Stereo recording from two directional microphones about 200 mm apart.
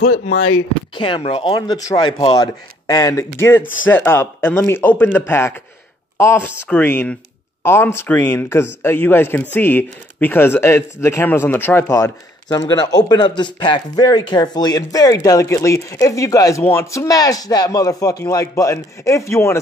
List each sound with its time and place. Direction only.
0.9 s speech: 25° left (ahead or behind)